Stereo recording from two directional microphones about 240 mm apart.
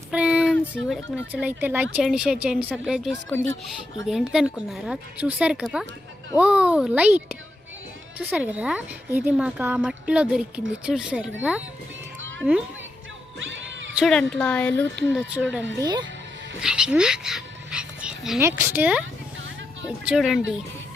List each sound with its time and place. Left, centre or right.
0.1 s a sound: centre
0.7 s speech: centre
13.4 s a sound: right
13.9 s speech: centre
15.8 s a child's voice: centre
16.6 s speech: centre
20.1 s speech: centre